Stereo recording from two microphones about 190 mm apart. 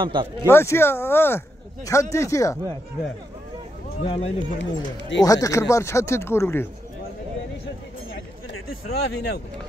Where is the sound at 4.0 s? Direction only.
35° left (ahead or behind).